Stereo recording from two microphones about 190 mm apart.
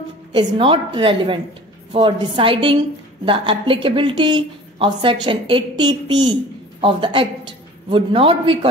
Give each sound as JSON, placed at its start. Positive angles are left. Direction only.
{"t": 0.3, "sound": "a woman's voice", "side_deg": -25}